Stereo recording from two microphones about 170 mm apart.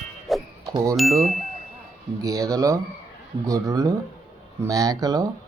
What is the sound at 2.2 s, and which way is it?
A man's voice, 20° right (ahead or behind).